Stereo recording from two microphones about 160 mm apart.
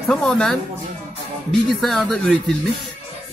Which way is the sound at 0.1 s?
5° left (ahead or behind).